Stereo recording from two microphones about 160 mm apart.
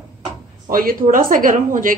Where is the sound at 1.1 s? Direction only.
60° right (ahead or behind).